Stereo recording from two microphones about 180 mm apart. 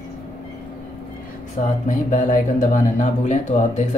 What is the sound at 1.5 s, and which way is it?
Speech, 45° left (ahead or behind).